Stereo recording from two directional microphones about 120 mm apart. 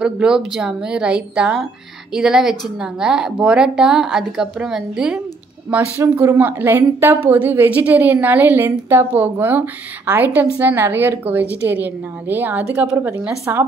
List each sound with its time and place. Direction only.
0.0 s a woman's voice: 5° right (ahead or behind)
5.7 s a woman's voice: 15° right (ahead or behind)